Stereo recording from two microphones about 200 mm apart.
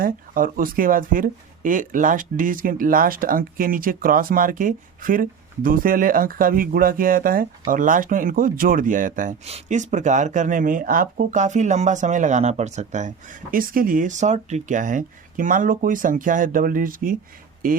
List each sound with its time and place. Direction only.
0.0 s speech: 45° right (ahead or behind)